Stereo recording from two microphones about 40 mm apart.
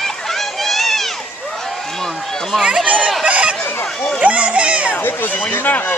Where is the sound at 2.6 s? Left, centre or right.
Right.